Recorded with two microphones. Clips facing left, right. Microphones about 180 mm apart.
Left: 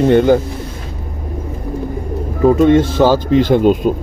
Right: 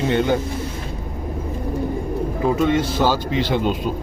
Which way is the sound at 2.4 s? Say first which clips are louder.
Left 9 dB; 45° left (ahead or behind).